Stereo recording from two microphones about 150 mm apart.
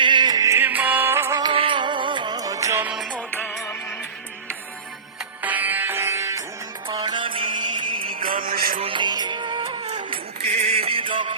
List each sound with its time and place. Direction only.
0.0 s music: 30° right (ahead or behind); by 1.4 s 15° right (ahead or behind)
1.4 s music: 35° right (ahead or behind); by 2.9 s 20° right (ahead or behind)
3.1 s music: 10° left (ahead or behind)
5.4 s music: 10° right (ahead or behind)
6.8 s music: 30° right (ahead or behind)
8.1 s music: 70° right (ahead or behind)
8.8 s music: 35° right (ahead or behind)